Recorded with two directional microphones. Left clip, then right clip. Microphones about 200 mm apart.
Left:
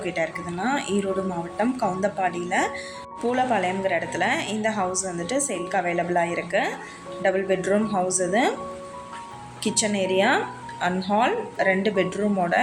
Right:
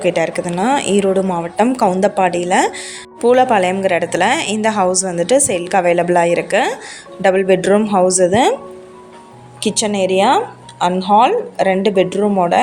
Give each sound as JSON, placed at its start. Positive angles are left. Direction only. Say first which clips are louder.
{"t": 0.0, "sound": "speech", "louder": "right 11 dB", "side_deg": -45}
{"t": 9.6, "sound": "speech", "louder": "right 8 dB", "side_deg": -40}